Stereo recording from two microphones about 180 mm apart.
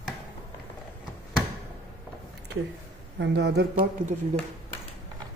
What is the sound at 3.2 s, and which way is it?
Speech, 75° right (ahead or behind).